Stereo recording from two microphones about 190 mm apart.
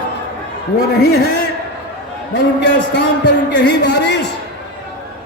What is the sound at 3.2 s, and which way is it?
Speech, 70° left (ahead or behind).